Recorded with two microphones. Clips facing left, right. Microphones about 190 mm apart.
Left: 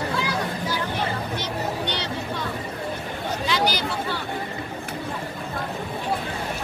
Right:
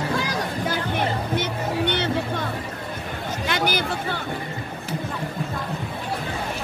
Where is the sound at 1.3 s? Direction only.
55° right (ahead or behind).